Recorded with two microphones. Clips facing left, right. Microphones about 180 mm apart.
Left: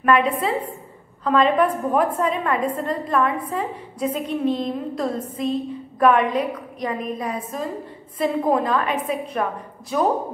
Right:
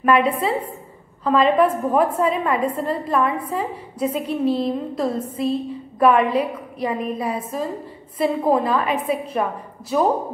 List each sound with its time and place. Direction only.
0.0 s a woman's voice: 5° right (ahead or behind)